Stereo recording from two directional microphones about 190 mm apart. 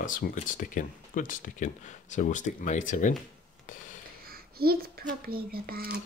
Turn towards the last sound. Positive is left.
turn(degrees=-50)  # may be behind; listen again after turning